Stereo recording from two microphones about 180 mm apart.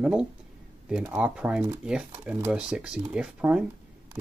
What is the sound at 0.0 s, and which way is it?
Speech, 5° right (ahead or behind).